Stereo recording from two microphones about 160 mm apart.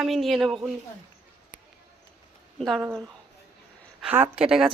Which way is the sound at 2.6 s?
Centre (ahead or behind).